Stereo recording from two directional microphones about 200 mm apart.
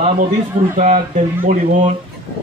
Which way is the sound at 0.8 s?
40° right (ahead or behind).